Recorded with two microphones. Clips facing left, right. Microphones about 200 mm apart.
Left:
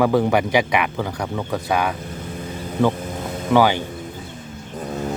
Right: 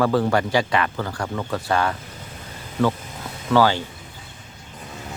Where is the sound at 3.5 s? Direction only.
15° left (ahead or behind).